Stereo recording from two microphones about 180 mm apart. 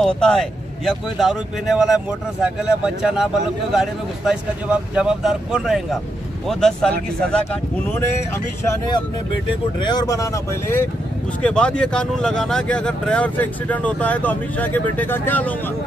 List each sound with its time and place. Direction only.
0.0 s speech: centre (ahead or behind)
9.8 s speech: 25° left (ahead or behind)